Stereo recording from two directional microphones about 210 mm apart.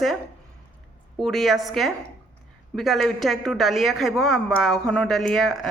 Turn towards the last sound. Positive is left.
turn(degrees=0)  # may be behind; listen again after turning